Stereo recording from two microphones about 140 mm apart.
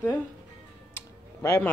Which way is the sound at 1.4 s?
15° left (ahead or behind).